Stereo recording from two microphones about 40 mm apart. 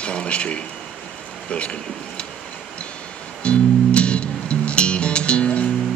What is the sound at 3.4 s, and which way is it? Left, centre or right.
Music, left.